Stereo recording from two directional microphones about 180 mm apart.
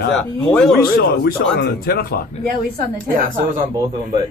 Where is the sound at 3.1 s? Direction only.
50° right (ahead or behind).